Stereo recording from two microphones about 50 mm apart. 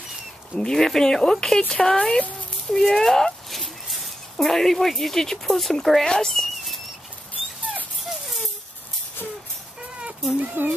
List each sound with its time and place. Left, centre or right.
0.6 s speech: centre
6.0 s cat: centre
10.3 s speech: right